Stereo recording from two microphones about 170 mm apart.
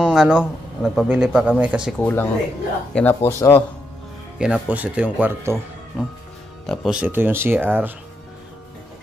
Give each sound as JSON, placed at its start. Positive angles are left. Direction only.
{"t": 0.0, "sound": "a man's voice", "side_deg": -5}
{"t": 2.9, "sound": "speech", "side_deg": 10}
{"t": 4.4, "sound": "speech", "side_deg": -10}
{"t": 5.9, "sound": "a man's voice", "side_deg": 0}